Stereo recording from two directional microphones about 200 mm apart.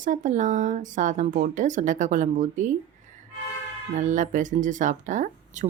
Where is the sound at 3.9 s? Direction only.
40° right (ahead or behind).